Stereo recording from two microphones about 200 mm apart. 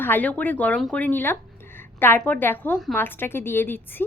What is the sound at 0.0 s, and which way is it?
A woman's voice, 10° left (ahead or behind).